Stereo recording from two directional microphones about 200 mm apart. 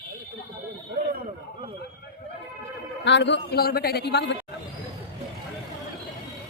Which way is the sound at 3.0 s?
60° left (ahead or behind).